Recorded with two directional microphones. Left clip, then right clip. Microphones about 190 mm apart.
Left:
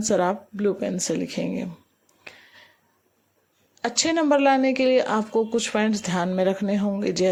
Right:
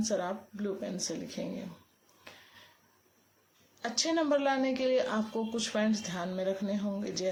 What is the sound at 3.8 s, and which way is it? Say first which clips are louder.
Speech: left 8 dB; 45° left (ahead or behind).